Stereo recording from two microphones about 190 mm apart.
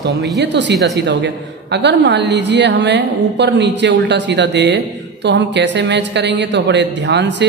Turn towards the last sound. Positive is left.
turn(degrees=-65)  # may be behind; listen again after turning